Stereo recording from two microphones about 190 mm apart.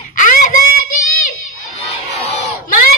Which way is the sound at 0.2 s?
45° left (ahead or behind).